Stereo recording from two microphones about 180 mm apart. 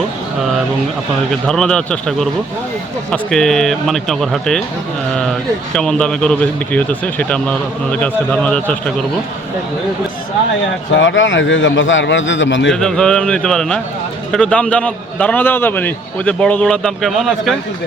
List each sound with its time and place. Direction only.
1.3 s a man's voice: 5° left (ahead or behind)
10.9 s a man's voice: 90° left
12.7 s a man's voice: 5° left (ahead or behind)